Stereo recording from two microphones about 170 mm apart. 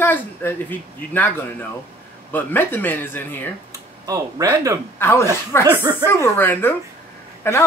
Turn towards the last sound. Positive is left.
turn(degrees=15)  # may be behind; listen again after turning